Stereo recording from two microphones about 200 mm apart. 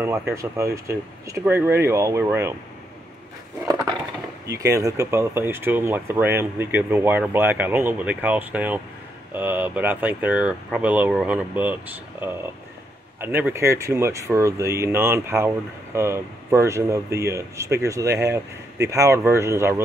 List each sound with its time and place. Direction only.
0.3 s speech: 15° right (ahead or behind)
3.6 s a sound: 20° right (ahead or behind)
4.6 s speech: 15° right (ahead or behind)